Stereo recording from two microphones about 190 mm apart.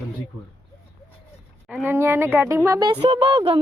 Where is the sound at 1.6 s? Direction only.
10° right (ahead or behind).